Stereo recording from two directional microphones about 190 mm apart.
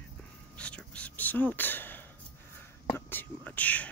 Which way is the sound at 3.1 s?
10° left (ahead or behind).